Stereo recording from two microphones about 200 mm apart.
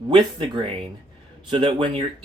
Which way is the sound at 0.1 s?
25° right (ahead or behind).